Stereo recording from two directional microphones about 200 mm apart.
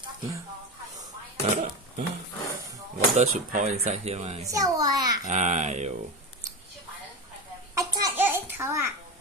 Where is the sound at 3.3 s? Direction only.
30° right (ahead or behind).